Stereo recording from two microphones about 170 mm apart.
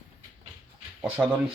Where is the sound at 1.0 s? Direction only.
10° right (ahead or behind).